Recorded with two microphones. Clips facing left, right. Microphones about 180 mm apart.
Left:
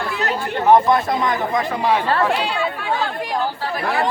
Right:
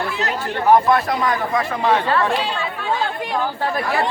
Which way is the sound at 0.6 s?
20° left (ahead or behind).